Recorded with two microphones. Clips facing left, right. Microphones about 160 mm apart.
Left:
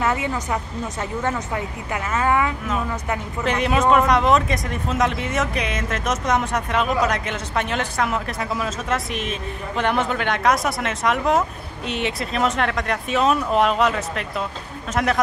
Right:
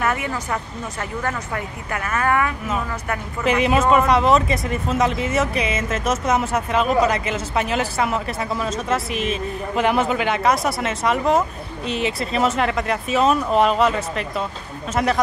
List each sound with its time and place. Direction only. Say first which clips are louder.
0.0 s speech: left 1 dB; 20° left (ahead or behind)
3.4 s speech: right 2 dB; 5° right (ahead or behind)